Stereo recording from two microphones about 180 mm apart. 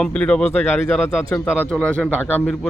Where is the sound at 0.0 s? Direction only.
5° left (ahead or behind).